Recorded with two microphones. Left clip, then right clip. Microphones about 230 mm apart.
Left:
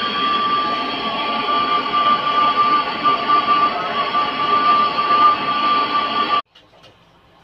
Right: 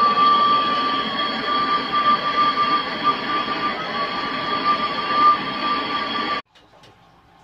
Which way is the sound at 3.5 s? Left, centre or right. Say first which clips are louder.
Left 7 dB; centre.